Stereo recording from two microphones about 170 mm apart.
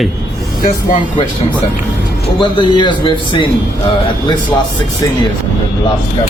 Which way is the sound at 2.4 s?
30° left (ahead or behind).